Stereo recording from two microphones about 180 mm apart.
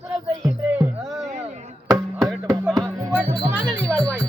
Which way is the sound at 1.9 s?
15° right (ahead or behind).